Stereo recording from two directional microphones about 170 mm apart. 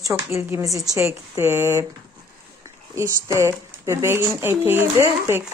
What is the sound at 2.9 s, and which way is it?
Speech, 15° right (ahead or behind).